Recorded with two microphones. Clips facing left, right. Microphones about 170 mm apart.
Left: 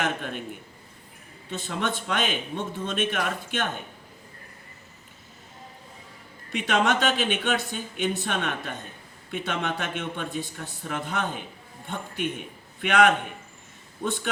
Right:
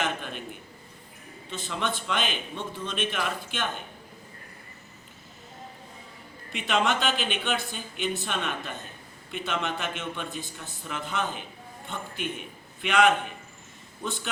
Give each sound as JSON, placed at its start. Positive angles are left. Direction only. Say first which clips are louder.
{"t": 0.0, "sound": "speech", "louder": "left 2 dB", "side_deg": 50}
{"t": 1.5, "sound": "speech", "louder": "left 2 dB", "side_deg": 55}
{"t": 6.8, "sound": "a man's voice", "louder": "left 3 dB", "side_deg": 55}